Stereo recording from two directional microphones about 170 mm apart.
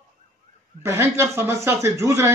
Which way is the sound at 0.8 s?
15° right (ahead or behind).